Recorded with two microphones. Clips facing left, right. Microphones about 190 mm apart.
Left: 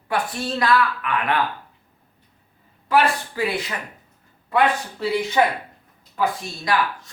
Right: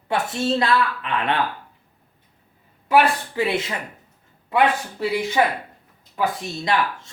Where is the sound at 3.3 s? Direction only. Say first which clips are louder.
Right 2 dB; 25° right (ahead or behind).